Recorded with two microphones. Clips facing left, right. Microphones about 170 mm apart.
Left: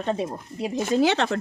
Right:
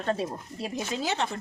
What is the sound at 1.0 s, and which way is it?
Speech, 80° left.